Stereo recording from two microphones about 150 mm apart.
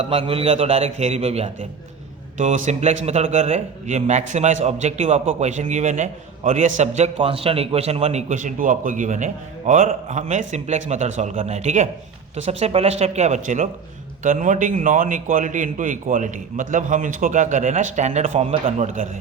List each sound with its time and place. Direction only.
0.0 s a man's voice: 35° right (ahead or behind)